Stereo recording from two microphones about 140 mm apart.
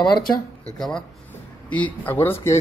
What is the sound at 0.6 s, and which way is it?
Speech, 5° left (ahead or behind).